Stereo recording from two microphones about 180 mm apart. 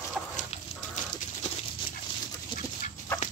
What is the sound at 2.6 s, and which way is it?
Chicken, 45° left (ahead or behind).